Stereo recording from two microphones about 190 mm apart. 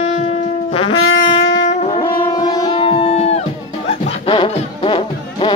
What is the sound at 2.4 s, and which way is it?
Music, 20° left (ahead or behind).